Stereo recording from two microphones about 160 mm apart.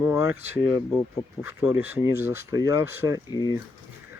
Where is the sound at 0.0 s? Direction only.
15° right (ahead or behind).